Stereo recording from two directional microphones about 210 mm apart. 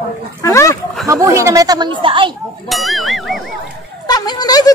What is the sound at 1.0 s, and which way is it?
Speech, 15° right (ahead or behind).